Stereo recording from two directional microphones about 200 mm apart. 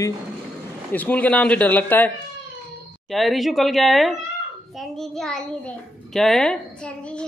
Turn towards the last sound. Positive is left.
turn(degrees=0)  # may be behind; listen again after turning